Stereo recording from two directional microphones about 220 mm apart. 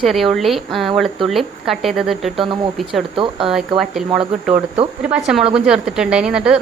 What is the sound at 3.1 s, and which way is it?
Speech, 25° right (ahead or behind).